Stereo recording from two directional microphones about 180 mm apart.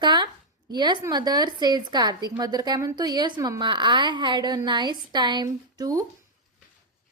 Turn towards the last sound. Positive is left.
turn(degrees=-20)  # may be behind; listen again after turning